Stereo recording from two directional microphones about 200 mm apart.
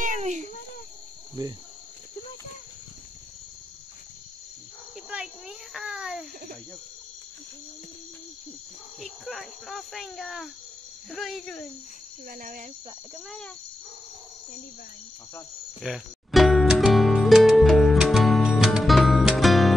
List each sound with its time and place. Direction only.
0.0 s a sound: 40° right (ahead or behind)
1.4 s cricket: 20° right (ahead or behind)
5.1 s a sound: 5° right (ahead or behind)
9.0 s speech: centre (ahead or behind)
12.3 s speech: 40° right (ahead or behind)
15.8 s music: centre (ahead or behind)